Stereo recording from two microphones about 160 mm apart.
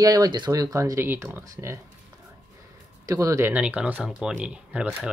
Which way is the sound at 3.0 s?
20° right (ahead or behind).